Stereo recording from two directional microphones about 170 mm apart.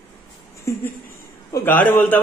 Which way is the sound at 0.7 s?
15° left (ahead or behind).